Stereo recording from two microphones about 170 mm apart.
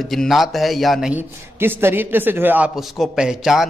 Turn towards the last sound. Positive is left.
turn(degrees=-5)  # may be behind; listen again after turning